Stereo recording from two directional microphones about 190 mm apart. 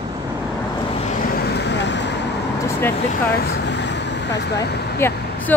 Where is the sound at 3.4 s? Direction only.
60° left (ahead or behind).